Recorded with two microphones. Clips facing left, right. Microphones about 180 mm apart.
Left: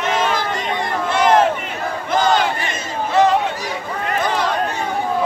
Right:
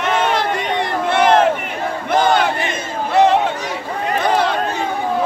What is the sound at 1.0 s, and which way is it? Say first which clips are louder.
Crowd: right 2 dB; 60° right (ahead or behind).